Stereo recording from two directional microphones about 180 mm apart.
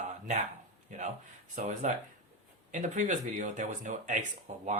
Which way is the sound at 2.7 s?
45° right (ahead or behind).